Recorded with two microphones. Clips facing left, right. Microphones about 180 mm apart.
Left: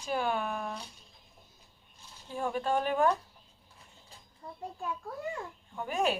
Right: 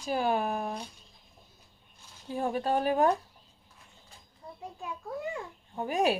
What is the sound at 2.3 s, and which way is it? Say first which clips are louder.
Speech: right 2 dB; 40° right (ahead or behind).